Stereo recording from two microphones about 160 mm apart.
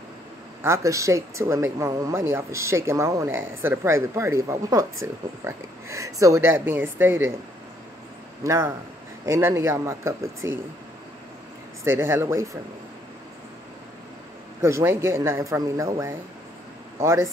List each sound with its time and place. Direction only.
0.6 s speech: 20° right (ahead or behind)
8.5 s speech: 15° right (ahead or behind)
11.8 s speech: 15° right (ahead or behind)
14.6 s speech: 15° right (ahead or behind)